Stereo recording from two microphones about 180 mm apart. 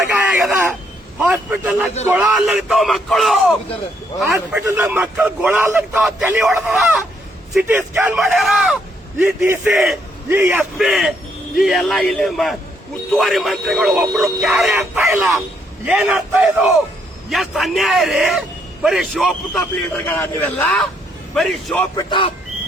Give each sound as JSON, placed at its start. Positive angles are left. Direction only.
{"t": 0.1, "sound": "a sound", "side_deg": -5}
{"t": 1.2, "sound": "a man's voice", "side_deg": -10}
{"t": 4.3, "sound": "a man's voice", "side_deg": -15}
{"t": 6.0, "sound": "a man's voice", "side_deg": 0}
{"t": 21.9, "sound": "a man's voice", "side_deg": 25}